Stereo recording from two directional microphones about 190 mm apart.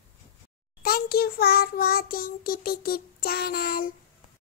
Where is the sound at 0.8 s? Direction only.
50° left (ahead or behind).